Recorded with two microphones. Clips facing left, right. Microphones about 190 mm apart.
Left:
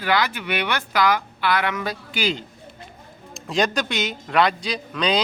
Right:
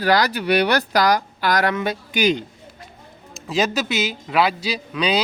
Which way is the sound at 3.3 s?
5° right (ahead or behind).